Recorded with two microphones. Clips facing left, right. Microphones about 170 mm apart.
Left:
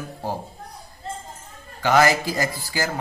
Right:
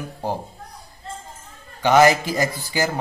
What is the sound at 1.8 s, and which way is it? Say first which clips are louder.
Speech: right 3 dB; 20° right (ahead or behind).